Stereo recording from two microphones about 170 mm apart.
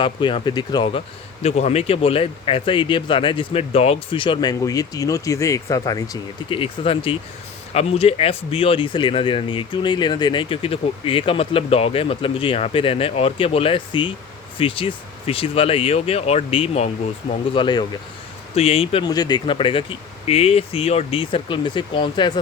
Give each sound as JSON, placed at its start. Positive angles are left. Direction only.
{"t": 0.0, "sound": "speech", "side_deg": 30}
{"t": 6.5, "sound": "speech", "side_deg": 30}